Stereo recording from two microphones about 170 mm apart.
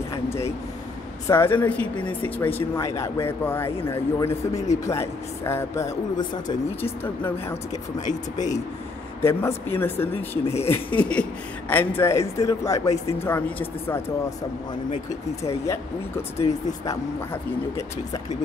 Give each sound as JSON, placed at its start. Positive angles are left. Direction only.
{"t": 0.1, "sound": "speech", "side_deg": 15}
{"t": 8.1, "sound": "speech", "side_deg": 45}
{"t": 9.2, "sound": "speech", "side_deg": 15}
{"t": 15.4, "sound": "speech", "side_deg": 15}